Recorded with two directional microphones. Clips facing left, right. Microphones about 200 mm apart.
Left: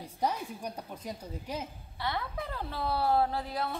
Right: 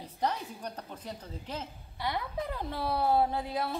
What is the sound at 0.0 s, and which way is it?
A woman's voice, 10° left (ahead or behind).